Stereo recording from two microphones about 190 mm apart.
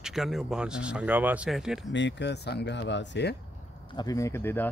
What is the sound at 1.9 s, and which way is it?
Speech, 70° left (ahead or behind).